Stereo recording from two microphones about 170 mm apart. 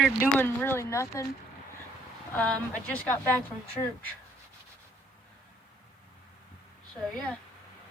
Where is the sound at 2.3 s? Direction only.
10° left (ahead or behind).